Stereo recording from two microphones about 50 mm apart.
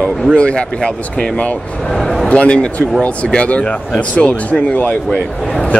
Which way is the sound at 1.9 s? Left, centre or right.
Centre.